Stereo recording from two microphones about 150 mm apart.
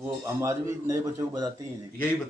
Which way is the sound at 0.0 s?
15° right (ahead or behind).